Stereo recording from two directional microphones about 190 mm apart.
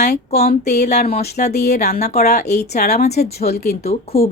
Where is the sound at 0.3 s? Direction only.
35° left (ahead or behind).